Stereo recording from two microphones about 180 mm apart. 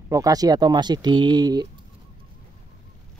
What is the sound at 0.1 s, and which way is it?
Speech, 20° right (ahead or behind).